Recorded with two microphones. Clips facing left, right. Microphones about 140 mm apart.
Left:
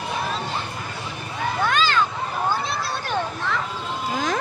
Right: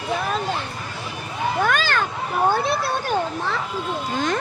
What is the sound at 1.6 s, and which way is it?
Vehicle, 50° right (ahead or behind).